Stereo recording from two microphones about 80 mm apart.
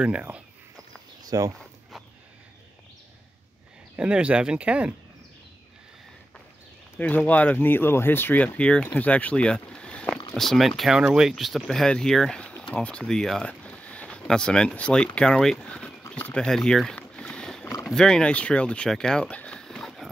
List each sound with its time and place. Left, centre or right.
0.0 s speech: centre
1.2 s a sound: right
3.9 s speech: centre
7.0 s speech: centre
8.5 s speech: centre
10.8 s speech: centre
16.1 s a sound: centre
17.8 s speech: centre
18.9 s a sound: centre